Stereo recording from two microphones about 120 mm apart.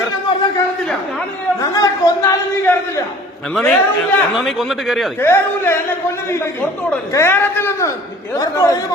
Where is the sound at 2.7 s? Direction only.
15° left (ahead or behind).